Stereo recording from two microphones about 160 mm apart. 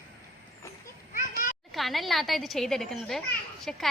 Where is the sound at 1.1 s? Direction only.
55° left (ahead or behind).